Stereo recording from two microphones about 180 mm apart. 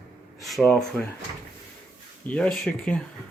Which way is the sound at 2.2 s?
5° left (ahead or behind).